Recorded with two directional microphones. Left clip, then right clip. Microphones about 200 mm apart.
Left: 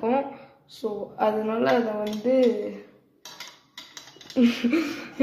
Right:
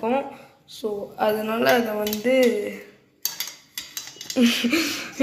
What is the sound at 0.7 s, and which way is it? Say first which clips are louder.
A woman's voice: right 2 dB; centre (ahead or behind).